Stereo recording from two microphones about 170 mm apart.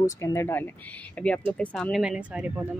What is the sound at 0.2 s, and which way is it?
A woman's voice, 15° left (ahead or behind).